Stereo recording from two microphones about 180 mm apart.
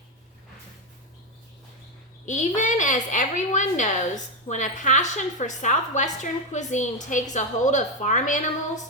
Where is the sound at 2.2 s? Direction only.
45° left (ahead or behind).